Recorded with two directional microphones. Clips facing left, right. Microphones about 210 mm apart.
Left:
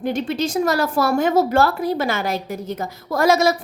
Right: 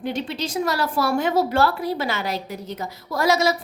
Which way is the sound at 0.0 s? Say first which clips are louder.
Left 5 dB; 50° left (ahead or behind).